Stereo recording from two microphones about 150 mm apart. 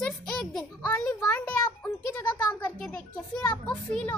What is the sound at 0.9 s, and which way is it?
Speech, 15° left (ahead or behind).